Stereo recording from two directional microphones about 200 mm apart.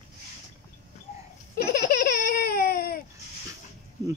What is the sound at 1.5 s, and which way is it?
Laughter, 50° left (ahead or behind).